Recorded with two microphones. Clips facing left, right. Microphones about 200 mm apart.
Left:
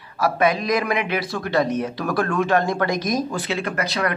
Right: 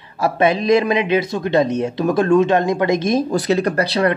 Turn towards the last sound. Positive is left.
turn(degrees=-30)  # may be behind; listen again after turning